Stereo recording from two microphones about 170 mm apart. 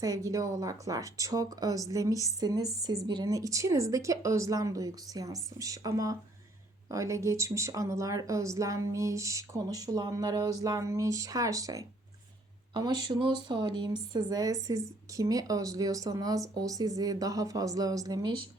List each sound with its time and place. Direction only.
0.0 s speech: 20° right (ahead or behind)